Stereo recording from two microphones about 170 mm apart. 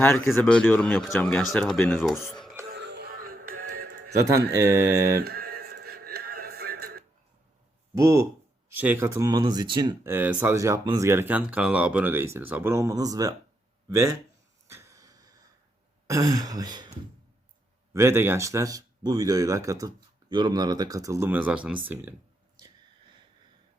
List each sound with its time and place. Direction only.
0.0 s speech: 5° left (ahead or behind)
2.6 s music: 85° right
3.5 s music: 55° right (ahead or behind)
4.1 s speech: 20° right (ahead or behind)
5.2 s synthetic singing: 65° right (ahead or behind)
7.9 s speech: 15° right (ahead or behind)
10.0 s speech: 10° right (ahead or behind)
14.7 s a sound: 15° right (ahead or behind)
16.0 s speech: 20° right (ahead or behind)
17.9 s speech: 15° right (ahead or behind)